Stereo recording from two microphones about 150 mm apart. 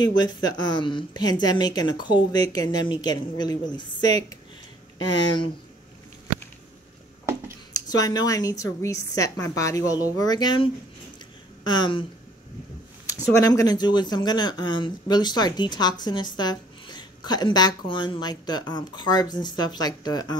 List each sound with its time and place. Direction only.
0.0 s speech: 30° left (ahead or behind)
7.7 s speech: 25° left (ahead or behind)